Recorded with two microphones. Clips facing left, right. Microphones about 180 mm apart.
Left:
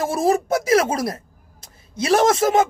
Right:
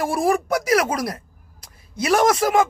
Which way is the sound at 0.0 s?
25° left (ahead or behind).